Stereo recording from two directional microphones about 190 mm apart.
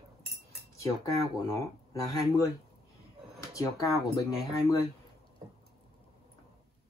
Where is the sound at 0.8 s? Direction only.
15° left (ahead or behind).